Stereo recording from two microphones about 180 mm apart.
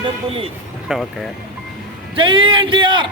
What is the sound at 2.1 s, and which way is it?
Speech, 30° right (ahead or behind).